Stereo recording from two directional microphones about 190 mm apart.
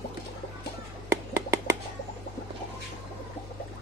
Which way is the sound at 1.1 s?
15° right (ahead or behind).